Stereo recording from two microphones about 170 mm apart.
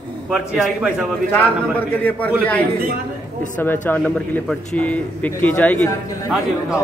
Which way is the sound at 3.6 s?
10° left (ahead or behind).